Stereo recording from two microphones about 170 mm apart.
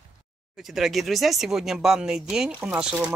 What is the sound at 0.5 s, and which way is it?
Speech, centre (ahead or behind).